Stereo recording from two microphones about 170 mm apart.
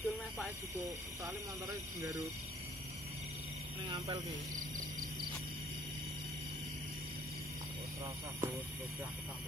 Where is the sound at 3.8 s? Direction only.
35° right (ahead or behind).